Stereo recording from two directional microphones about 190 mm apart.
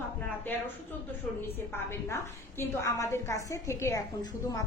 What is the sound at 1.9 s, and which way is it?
A woman's voice, 10° left (ahead or behind).